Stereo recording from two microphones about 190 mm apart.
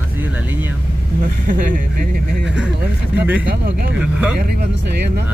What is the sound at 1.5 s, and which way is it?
Speech, 45° right (ahead or behind).